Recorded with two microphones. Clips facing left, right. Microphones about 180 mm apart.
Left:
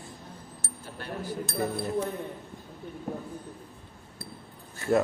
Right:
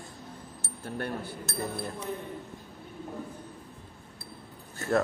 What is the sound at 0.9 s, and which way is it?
Speech, 55° right (ahead or behind).